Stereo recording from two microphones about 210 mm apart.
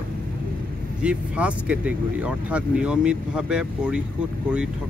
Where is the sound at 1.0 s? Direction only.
5° right (ahead or behind).